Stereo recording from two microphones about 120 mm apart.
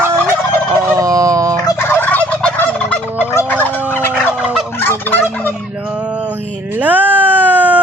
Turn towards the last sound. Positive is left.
turn(degrees=-15)  # may be behind; listen again after turning